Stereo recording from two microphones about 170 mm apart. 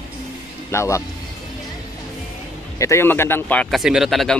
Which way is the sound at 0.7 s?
15° left (ahead or behind).